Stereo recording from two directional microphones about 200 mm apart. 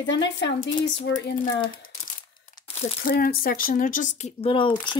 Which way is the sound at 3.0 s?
45° left (ahead or behind).